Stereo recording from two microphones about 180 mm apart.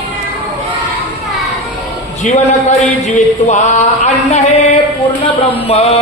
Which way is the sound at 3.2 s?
40° left (ahead or behind).